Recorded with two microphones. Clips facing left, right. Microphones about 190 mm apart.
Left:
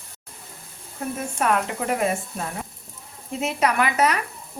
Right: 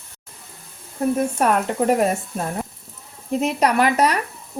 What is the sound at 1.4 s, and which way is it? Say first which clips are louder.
Speech: right 2 dB; 40° right (ahead or behind).